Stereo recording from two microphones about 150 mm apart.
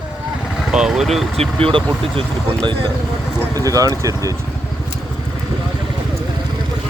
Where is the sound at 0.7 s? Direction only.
5° right (ahead or behind).